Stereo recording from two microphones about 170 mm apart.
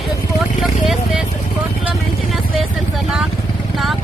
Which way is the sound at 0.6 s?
Centre (ahead or behind).